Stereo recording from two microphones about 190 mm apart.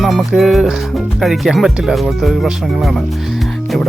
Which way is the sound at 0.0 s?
Centre (ahead or behind).